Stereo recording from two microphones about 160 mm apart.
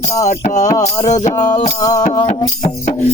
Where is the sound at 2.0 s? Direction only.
40° left (ahead or behind).